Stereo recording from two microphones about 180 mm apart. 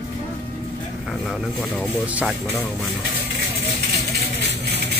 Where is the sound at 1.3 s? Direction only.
Centre (ahead or behind).